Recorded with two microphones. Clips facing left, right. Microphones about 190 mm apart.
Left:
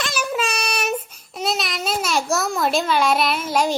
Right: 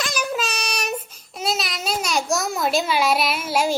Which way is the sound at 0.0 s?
5° left (ahead or behind).